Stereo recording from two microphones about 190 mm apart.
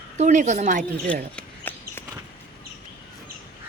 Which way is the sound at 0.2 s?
40° right (ahead or behind).